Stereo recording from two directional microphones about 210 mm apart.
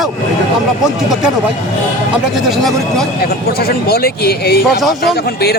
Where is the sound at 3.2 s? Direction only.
45° left (ahead or behind).